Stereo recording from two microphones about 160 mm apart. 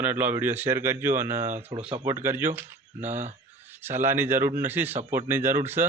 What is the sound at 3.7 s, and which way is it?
Speech, 15° right (ahead or behind).